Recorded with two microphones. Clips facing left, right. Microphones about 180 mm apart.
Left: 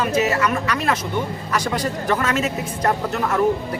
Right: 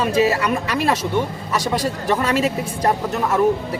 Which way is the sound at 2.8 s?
10° right (ahead or behind).